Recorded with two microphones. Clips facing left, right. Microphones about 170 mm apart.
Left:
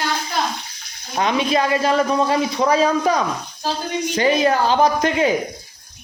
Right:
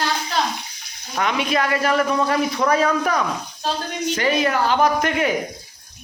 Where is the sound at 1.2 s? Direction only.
25° left (ahead or behind).